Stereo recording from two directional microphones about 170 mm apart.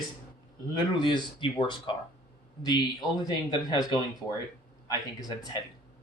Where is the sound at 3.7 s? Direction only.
25° left (ahead or behind).